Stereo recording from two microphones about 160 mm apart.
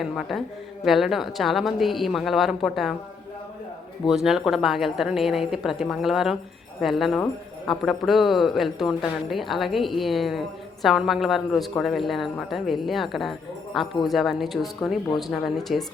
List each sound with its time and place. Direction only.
0.0 s a woman's voice: centre (ahead or behind)
4.0 s a woman's voice: centre (ahead or behind)